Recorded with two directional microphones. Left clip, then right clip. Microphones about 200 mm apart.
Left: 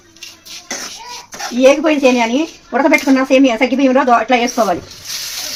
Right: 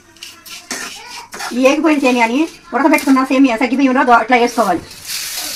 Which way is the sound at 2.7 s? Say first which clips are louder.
Left 1 dB; 15° left (ahead or behind).